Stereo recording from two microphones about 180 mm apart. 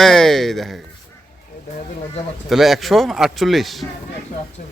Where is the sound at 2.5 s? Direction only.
Centre (ahead or behind).